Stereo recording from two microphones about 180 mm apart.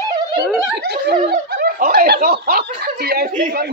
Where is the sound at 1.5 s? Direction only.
60° right (ahead or behind).